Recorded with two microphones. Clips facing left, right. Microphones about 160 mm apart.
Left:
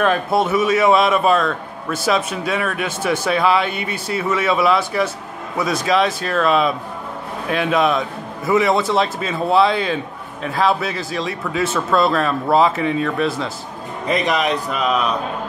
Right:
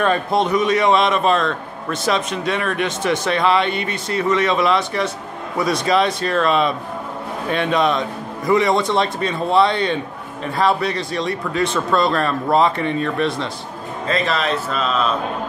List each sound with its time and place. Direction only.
0.0 s a man's voice: 5° left (ahead or behind)
14.0 s a man's voice: 15° left (ahead or behind)